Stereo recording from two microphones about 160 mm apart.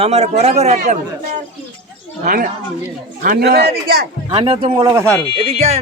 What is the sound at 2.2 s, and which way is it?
Speech, 60° right (ahead or behind).